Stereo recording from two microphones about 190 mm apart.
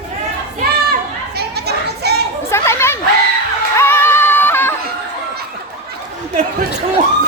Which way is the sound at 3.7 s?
15° left (ahead or behind).